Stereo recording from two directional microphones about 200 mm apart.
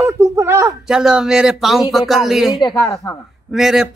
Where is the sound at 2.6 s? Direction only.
20° left (ahead or behind).